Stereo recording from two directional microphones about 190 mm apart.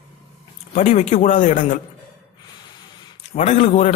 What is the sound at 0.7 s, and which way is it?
A man's voice, 40° left (ahead or behind).